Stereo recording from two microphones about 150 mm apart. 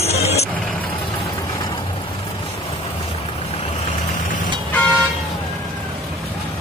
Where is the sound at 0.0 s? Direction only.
45° left (ahead or behind).